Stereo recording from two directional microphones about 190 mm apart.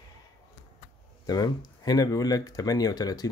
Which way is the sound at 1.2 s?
20° left (ahead or behind).